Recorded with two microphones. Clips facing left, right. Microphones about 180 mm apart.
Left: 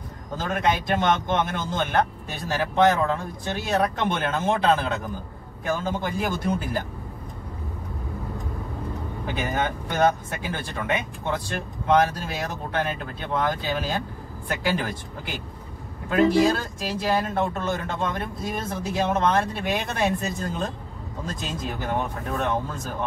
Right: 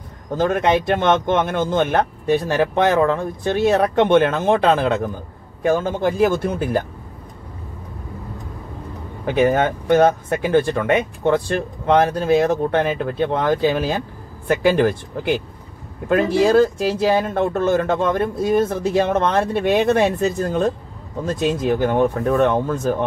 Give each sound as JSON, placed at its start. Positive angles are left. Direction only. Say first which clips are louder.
{"t": 0.4, "sound": "speech", "louder": "right 7 dB", "side_deg": -60}
{"t": 9.2, "sound": "speech", "louder": "right 11 dB", "side_deg": -55}